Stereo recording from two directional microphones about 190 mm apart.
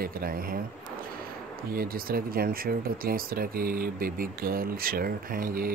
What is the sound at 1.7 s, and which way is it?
Speech, 50° right (ahead or behind).